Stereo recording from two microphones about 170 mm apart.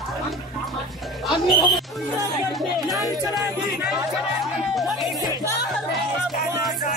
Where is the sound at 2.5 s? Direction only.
Centre (ahead or behind).